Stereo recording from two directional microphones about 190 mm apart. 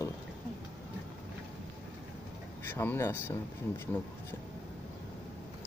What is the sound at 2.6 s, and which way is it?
Speech, 10° left (ahead or behind).